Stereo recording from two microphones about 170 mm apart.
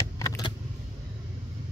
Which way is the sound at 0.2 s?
20° left (ahead or behind).